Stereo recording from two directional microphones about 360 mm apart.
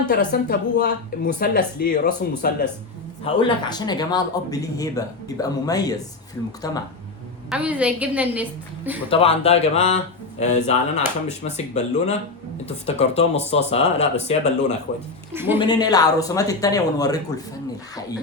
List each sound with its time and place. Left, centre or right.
0.1 s speech: left
3.2 s speech: centre
7.5 s a woman's voice: centre
9.0 s speech: centre
15.3 s speech: centre
15.5 s speech: centre